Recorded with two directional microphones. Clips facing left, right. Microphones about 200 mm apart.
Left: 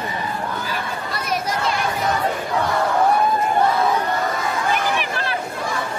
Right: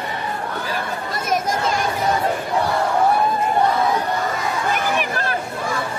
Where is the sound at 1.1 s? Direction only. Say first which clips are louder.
Right 3 dB; 45° right (ahead or behind).